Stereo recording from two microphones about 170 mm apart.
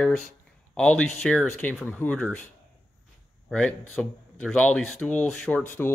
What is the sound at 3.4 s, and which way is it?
Speech, 5° left (ahead or behind).